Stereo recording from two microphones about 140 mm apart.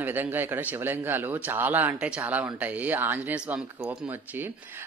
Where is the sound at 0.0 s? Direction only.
15° right (ahead or behind).